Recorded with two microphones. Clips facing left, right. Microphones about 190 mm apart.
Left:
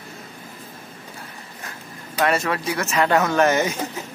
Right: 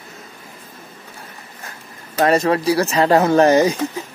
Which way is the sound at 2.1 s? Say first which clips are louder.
Right 6 dB; 35° right (ahead or behind).